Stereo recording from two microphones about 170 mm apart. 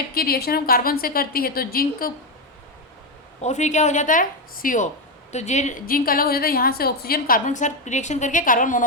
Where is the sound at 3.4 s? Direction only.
40° left (ahead or behind).